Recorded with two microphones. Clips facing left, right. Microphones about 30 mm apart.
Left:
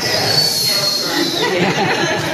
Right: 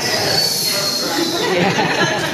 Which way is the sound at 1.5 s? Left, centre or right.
Centre.